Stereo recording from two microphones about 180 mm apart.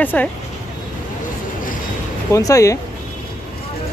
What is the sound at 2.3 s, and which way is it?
Speech, 20° left (ahead or behind).